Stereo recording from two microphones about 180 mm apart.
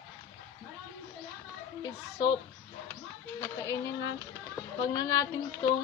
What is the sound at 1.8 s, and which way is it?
Speech, 20° left (ahead or behind).